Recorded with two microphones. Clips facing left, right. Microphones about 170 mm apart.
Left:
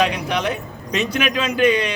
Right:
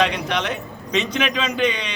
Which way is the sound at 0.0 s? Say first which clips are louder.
Left 1 dB; 10° left (ahead or behind).